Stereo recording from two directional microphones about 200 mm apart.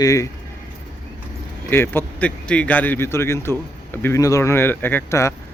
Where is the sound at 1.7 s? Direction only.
10° left (ahead or behind).